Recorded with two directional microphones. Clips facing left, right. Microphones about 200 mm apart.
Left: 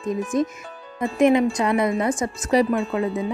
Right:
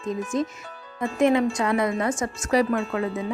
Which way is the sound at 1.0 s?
15° left (ahead or behind).